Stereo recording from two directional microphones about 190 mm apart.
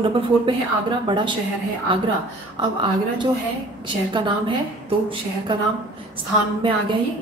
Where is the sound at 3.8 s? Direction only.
25° right (ahead or behind).